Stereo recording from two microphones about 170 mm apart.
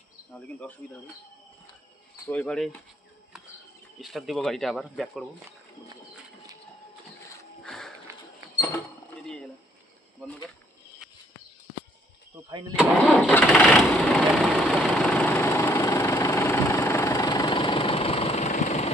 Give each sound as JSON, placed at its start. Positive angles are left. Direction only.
{"t": 0.6, "sound": "speech", "side_deg": 10}
{"t": 2.3, "sound": "speech", "side_deg": 5}
{"t": 4.0, "sound": "speech", "side_deg": 0}
{"t": 7.6, "sound": "a sound", "side_deg": 5}
{"t": 12.4, "sound": "speech", "side_deg": -25}
{"t": 13.0, "sound": "speech", "side_deg": 0}
{"t": 13.3, "sound": "vehicle", "side_deg": 5}